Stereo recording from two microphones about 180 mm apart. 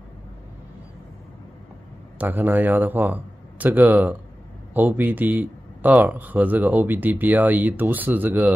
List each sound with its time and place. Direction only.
2.1 s a man's voice: 10° right (ahead or behind)